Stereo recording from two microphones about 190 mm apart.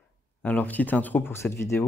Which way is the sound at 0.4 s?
10° left (ahead or behind).